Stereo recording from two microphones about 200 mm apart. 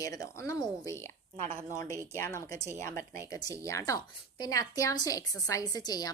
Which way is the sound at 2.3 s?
15° left (ahead or behind).